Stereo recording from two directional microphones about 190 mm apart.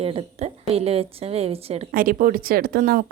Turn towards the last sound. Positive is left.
turn(degrees=-50)  # may be behind; listen again after turning